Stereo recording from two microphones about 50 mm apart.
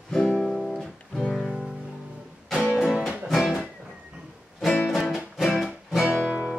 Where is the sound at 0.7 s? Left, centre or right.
Centre.